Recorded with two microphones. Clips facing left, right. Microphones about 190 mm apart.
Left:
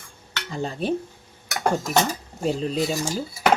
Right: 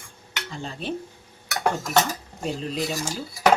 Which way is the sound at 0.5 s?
40° left (ahead or behind).